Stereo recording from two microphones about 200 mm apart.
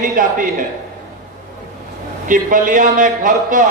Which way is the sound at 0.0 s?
40° right (ahead or behind).